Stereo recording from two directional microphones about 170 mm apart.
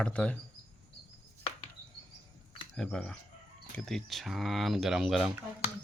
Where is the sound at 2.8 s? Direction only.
5° left (ahead or behind).